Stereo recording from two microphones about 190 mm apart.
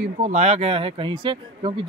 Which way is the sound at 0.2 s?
35° right (ahead or behind).